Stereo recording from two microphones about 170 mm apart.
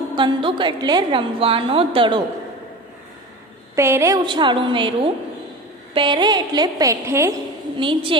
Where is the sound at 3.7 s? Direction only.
15° right (ahead or behind).